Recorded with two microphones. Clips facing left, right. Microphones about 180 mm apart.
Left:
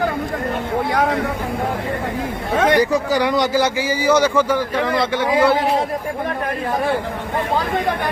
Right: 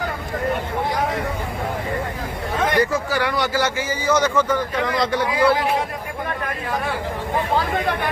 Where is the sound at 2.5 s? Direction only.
75° left (ahead or behind).